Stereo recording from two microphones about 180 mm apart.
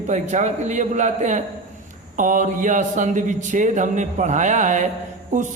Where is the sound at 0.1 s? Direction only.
40° right (ahead or behind).